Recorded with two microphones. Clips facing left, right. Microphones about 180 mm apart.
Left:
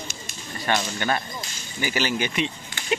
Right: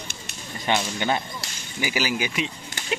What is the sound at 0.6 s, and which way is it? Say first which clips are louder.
Speech: right 1 dB; 15° right (ahead or behind).